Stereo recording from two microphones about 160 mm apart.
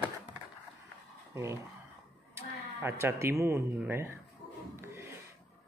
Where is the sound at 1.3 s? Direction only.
15° right (ahead or behind).